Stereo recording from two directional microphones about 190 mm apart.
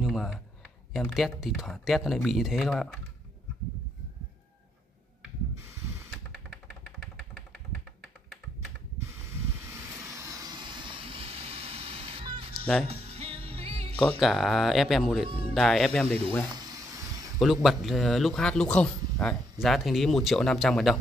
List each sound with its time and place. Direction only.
0.0 s a sound: centre (ahead or behind)
0.9 s speech: centre (ahead or behind)
6.3 s typewriter: 5° left (ahead or behind)
9.3 s vehicle: 15° right (ahead or behind); by 12.5 s 30° right (ahead or behind)
12.8 s music: 30° right (ahead or behind)
13.9 s speech: 5° left (ahead or behind)
15.2 s speech: 30° right (ahead or behind)
15.5 s speech: centre (ahead or behind)
16.5 s a sound: 20° right (ahead or behind)
17.4 s speech: centre (ahead or behind)